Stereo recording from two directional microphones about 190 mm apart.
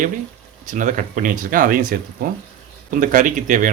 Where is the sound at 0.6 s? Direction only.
40° right (ahead or behind).